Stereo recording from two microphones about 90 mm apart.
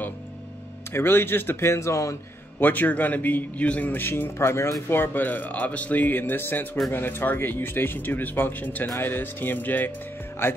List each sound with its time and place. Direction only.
0.9 s a man's voice: 25° left (ahead or behind)
2.6 s a man's voice: 20° left (ahead or behind)